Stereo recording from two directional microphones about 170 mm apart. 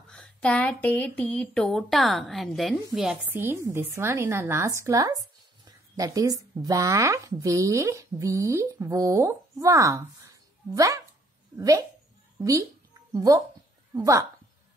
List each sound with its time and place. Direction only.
0.1 s speech: 5° left (ahead or behind); by 14.2 s 20° right (ahead or behind)